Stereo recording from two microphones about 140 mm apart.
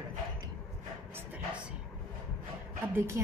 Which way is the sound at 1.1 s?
10° right (ahead or behind).